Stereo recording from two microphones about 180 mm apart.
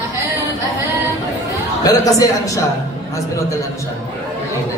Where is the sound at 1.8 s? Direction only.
20° left (ahead or behind).